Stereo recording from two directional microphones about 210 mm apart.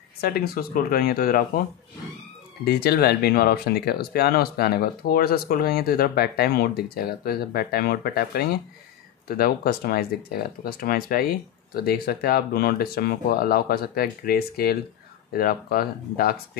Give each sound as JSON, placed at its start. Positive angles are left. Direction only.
{"t": 0.2, "sound": "speech", "side_deg": 45}
{"t": 2.6, "sound": "speech", "side_deg": 50}